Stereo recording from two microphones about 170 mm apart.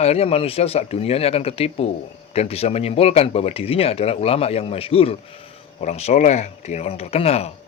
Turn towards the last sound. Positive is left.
turn(degrees=40)  # may be behind; listen again after turning